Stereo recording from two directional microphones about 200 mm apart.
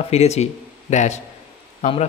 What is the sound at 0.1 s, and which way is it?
Speech, 35° left (ahead or behind).